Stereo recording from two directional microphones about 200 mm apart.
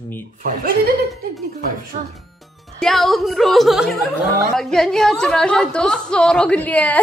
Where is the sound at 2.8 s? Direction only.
Centre (ahead or behind).